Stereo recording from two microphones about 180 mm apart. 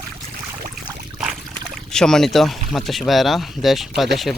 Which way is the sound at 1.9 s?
5° left (ahead or behind).